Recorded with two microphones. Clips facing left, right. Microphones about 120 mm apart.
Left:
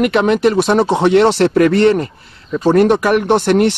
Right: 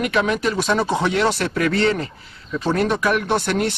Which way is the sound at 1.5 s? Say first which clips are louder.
Left 9 dB; 45° left (ahead or behind).